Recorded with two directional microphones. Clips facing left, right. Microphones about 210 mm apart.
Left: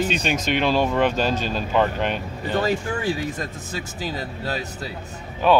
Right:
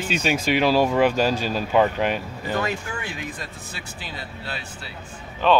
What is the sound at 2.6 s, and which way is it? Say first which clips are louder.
Speech: left 6 dB; 35° left (ahead or behind).